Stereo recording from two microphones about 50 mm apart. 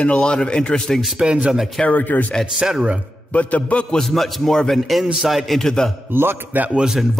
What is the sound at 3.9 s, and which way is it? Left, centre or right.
A man's voice, centre.